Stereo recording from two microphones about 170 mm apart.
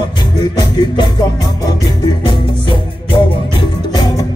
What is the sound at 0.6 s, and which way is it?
Music, 25° left (ahead or behind).